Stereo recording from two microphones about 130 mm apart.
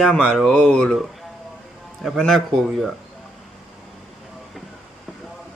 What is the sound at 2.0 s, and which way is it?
Speech, centre (ahead or behind).